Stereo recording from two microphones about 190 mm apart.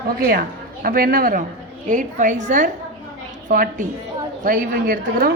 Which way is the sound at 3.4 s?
45° right (ahead or behind).